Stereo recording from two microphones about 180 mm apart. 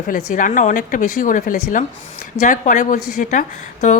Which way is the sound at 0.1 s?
50° left (ahead or behind).